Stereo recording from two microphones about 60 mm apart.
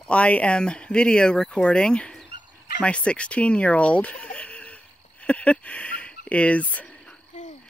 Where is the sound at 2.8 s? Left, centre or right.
Centre.